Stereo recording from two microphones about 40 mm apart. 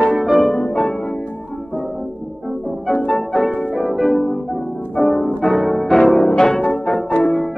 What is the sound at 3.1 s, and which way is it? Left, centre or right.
Music, centre.